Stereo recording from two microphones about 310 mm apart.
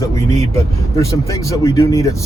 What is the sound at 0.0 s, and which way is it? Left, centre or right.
Speech, centre.